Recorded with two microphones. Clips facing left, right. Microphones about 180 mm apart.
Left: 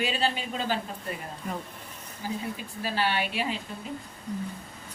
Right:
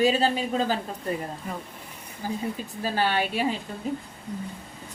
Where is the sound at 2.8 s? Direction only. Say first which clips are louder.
Right 3 dB; 45° right (ahead or behind).